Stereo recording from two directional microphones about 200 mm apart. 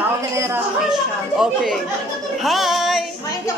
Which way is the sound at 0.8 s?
Centre (ahead or behind).